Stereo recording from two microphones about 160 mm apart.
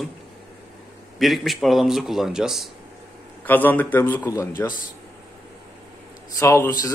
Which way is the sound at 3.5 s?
10° left (ahead or behind).